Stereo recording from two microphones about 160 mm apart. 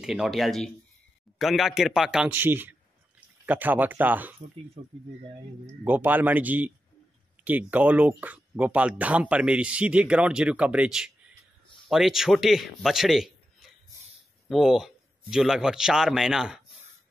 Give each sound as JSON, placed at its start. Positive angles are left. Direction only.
{"t": 0.0, "sound": "a man's voice", "side_deg": 0}
{"t": 4.8, "sound": "speech", "side_deg": -35}
{"t": 5.9, "sound": "a man's voice", "side_deg": -10}